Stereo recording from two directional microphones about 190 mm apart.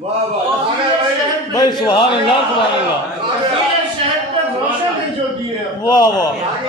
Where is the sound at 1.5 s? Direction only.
20° left (ahead or behind).